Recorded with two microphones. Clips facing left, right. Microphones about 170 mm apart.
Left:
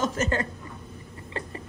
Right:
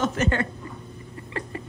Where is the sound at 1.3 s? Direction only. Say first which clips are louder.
Right 2 dB; 30° left (ahead or behind).